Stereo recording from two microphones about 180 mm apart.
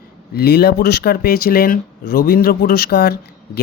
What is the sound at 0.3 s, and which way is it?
Speech, 60° left (ahead or behind).